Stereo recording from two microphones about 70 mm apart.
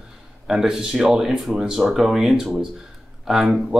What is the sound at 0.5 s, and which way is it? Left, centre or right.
Speech, centre.